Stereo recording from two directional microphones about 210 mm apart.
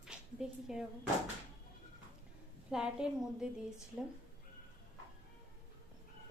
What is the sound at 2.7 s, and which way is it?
Speech, 5° right (ahead or behind).